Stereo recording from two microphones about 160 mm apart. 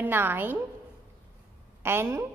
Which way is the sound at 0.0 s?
10° right (ahead or behind).